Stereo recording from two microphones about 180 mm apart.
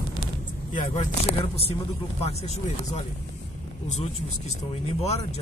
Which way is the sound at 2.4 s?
35° left (ahead or behind).